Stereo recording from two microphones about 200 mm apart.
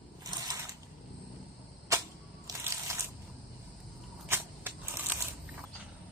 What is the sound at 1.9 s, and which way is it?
Camera, 15° right (ahead or behind).